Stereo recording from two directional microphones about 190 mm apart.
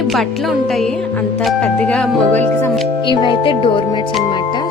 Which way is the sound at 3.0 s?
25° left (ahead or behind).